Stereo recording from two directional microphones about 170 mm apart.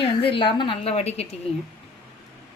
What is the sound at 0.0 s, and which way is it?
A woman's voice, 35° left (ahead or behind).